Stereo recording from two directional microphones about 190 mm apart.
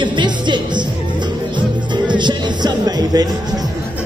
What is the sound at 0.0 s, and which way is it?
Music, 25° right (ahead or behind).